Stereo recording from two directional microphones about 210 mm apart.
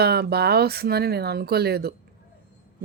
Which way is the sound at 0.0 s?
50° right (ahead or behind).